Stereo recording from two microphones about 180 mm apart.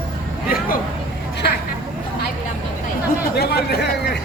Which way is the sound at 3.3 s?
60° left (ahead or behind).